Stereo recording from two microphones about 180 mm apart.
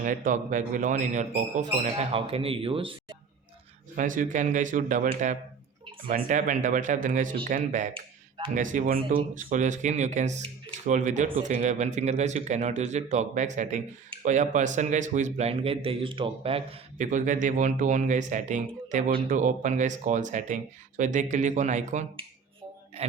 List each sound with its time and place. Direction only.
0.0 s a man's voice: 45° right (ahead or behind); by 3.2 s 30° right (ahead or behind)
3.9 s a man's voice: 45° right (ahead or behind)
23.0 s music: 35° right (ahead or behind)